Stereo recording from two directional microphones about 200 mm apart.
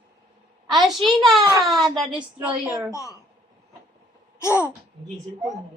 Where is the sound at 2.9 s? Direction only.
15° left (ahead or behind).